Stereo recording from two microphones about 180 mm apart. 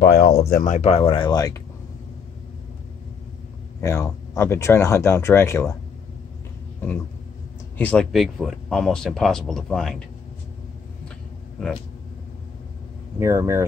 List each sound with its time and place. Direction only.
0.0 s speech: 65° left (ahead or behind); by 1.6 s 20° left (ahead or behind)
3.8 s speech: 15° left (ahead or behind)
7.7 s speech: 10° left (ahead or behind)
13.2 s speech: 15° right (ahead or behind)